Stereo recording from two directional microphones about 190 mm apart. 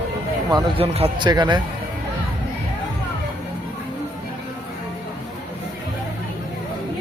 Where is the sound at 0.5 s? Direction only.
30° right (ahead or behind).